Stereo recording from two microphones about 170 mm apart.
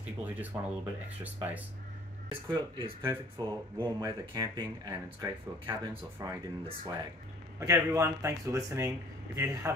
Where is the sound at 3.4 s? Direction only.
25° right (ahead or behind).